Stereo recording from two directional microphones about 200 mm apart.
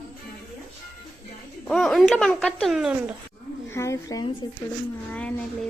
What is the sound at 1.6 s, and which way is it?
Speech, centre (ahead or behind).